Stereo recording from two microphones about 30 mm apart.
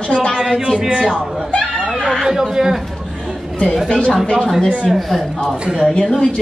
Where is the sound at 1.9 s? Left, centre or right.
Centre.